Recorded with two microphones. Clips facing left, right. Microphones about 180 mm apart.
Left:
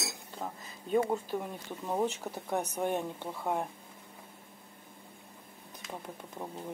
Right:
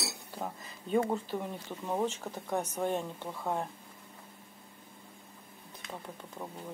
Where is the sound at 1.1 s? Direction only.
5° left (ahead or behind).